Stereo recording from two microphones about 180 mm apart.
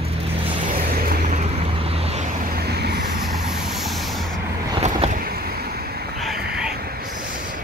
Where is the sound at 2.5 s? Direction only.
65° right (ahead or behind).